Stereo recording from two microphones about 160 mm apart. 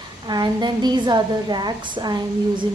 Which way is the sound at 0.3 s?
25° right (ahead or behind).